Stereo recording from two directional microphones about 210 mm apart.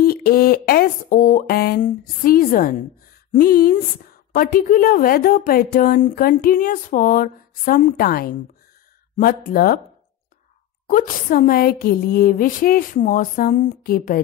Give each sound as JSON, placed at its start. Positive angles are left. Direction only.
{"t": 0.0, "sound": "a woman's voice", "side_deg": 45}
{"t": 10.9, "sound": "speech", "side_deg": 40}